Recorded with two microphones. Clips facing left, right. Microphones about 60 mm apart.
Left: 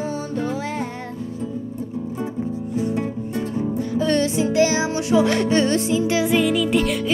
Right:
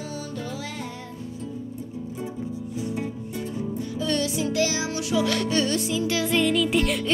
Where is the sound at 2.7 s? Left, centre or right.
Left.